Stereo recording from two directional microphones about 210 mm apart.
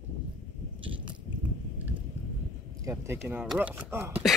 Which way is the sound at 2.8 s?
15° right (ahead or behind).